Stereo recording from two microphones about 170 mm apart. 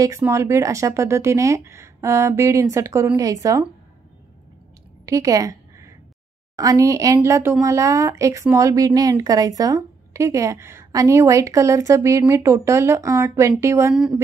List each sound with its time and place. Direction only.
0.0 s speech: 15° right (ahead or behind)
5.0 s a sound: 20° right (ahead or behind)
6.5 s a woman's voice: 20° right (ahead or behind)